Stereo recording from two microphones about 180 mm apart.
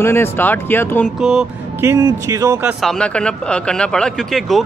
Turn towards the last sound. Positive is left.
turn(degrees=0)  # may be behind; listen again after turning